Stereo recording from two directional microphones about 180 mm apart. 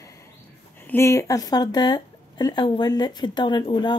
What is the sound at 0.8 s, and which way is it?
Speech, 15° left (ahead or behind).